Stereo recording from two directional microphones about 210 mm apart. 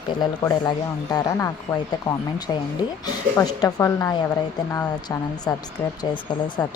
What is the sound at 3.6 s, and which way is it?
Speech, 15° left (ahead or behind).